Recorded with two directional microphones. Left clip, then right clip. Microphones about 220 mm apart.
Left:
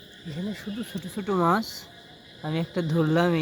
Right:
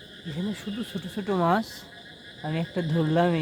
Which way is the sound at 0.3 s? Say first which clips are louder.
Right 1 dB; centre (ahead or behind).